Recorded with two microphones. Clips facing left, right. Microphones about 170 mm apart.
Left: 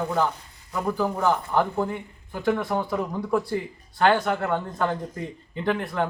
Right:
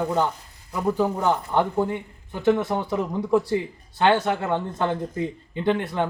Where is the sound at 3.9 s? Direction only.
25° right (ahead or behind).